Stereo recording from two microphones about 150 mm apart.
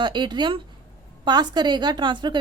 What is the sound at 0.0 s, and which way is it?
A woman's voice, 30° right (ahead or behind).